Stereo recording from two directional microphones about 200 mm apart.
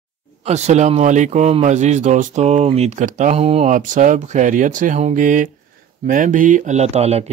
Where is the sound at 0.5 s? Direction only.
35° right (ahead or behind).